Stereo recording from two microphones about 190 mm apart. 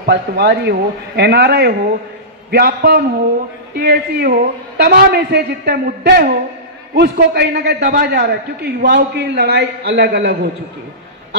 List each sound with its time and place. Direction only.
0.0 s a man's voice: 65° right (ahead or behind)